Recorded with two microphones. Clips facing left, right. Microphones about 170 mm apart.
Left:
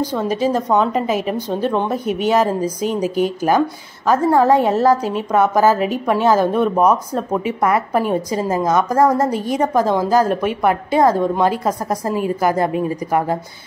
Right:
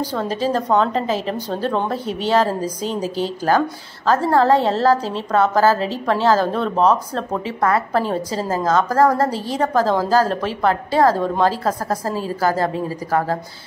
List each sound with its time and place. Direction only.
0.1 s a woman's voice: 10° left (ahead or behind)